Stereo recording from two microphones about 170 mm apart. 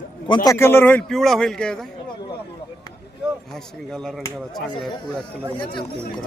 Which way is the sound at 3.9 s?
5° left (ahead or behind).